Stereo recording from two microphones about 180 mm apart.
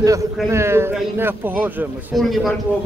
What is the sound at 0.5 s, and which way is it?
A man's voice, 15° right (ahead or behind).